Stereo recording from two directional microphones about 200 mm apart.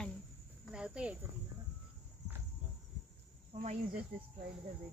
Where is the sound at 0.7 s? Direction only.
5° right (ahead or behind).